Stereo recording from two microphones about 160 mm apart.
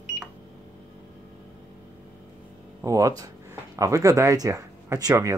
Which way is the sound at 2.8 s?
20° right (ahead or behind).